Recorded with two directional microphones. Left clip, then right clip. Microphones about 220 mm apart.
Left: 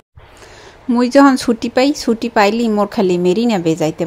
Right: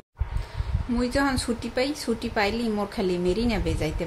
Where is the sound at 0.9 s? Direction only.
35° left (ahead or behind).